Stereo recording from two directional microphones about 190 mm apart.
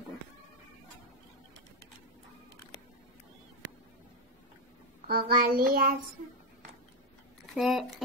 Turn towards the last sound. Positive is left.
turn(degrees=0)  # may be behind; listen again after turning